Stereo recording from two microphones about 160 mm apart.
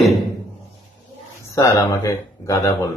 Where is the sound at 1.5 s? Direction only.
20° left (ahead or behind).